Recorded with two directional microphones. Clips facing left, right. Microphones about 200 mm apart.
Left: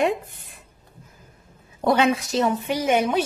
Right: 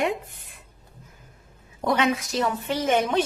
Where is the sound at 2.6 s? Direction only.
10° left (ahead or behind).